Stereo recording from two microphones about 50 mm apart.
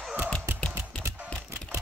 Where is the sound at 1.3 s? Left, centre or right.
Right.